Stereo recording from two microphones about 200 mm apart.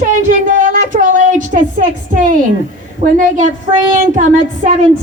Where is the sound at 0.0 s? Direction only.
40° right (ahead or behind).